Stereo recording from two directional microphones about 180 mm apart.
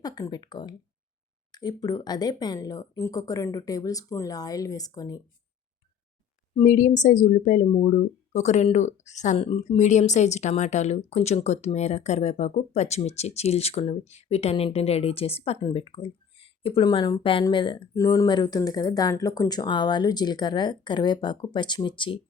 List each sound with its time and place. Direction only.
0.0 s speech: 20° left (ahead or behind)
6.6 s a woman's voice: 45° left (ahead or behind); by 22.2 s 25° left (ahead or behind)